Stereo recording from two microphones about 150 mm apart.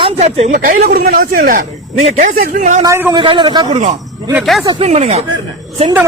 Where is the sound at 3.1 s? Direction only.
30° right (ahead or behind).